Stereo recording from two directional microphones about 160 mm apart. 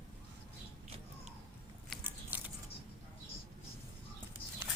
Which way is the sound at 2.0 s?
10° right (ahead or behind).